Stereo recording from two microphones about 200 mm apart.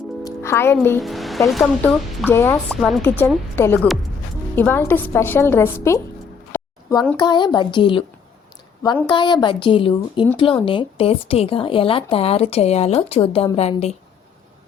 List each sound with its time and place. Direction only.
0.3 s speech: 15° left (ahead or behind)
1.0 s speech: centre (ahead or behind)
2.3 s a woman's voice: 10° left (ahead or behind)
6.5 s a sound: 10° left (ahead or behind)
7.2 s a woman's voice: 20° left (ahead or behind)
9.0 s a woman's voice: 25° left (ahead or behind)